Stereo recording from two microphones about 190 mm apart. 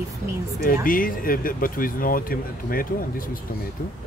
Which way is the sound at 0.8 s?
45° left (ahead or behind).